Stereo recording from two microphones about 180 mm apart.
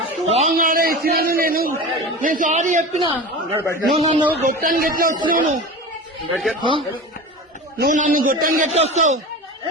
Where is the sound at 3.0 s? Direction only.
25° right (ahead or behind).